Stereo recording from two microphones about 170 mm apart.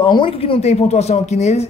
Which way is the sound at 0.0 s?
30° left (ahead or behind).